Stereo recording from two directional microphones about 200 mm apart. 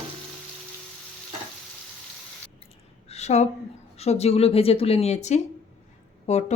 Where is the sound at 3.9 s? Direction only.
30° left (ahead or behind).